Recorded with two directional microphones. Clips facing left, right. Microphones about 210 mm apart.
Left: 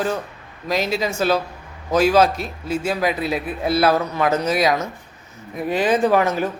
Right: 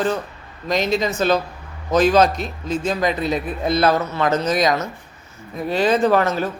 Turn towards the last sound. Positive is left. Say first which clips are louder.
# even
turn(degrees=15)  # may be behind; listen again after turning